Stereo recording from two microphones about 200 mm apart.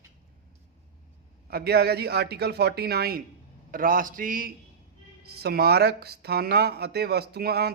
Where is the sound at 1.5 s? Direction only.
55° right (ahead or behind).